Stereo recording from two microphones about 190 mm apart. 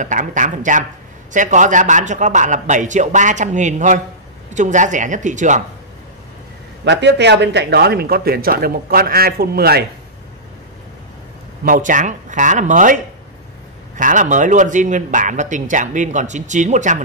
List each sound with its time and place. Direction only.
0.0 s speech: 40° right (ahead or behind)
6.8 s speech: 65° right (ahead or behind)
11.6 s speech: 45° right (ahead or behind)